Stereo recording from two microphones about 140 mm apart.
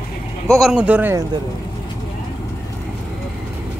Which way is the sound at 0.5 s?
Centre (ahead or behind).